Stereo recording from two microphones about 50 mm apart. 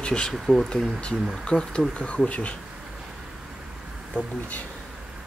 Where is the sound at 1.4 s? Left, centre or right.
Centre.